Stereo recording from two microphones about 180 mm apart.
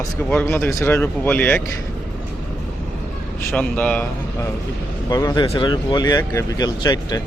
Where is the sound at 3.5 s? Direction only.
5° left (ahead or behind).